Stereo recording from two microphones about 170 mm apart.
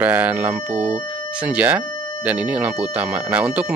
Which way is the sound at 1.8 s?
25° left (ahead or behind).